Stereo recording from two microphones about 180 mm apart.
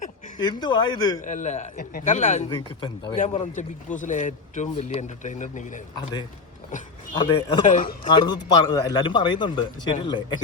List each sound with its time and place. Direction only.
0.3 s a man's voice: 25° left (ahead or behind)
1.2 s speech: 40° left (ahead or behind)
2.5 s a man's voice: 25° left (ahead or behind)
3.2 s speech: 40° left (ahead or behind)
7.2 s a man's voice: 25° left (ahead or behind)
7.6 s speech: 45° left (ahead or behind)
8.1 s a man's voice: 25° left (ahead or behind)